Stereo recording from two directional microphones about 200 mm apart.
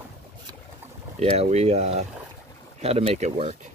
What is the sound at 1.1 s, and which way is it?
Speech, 30° right (ahead or behind).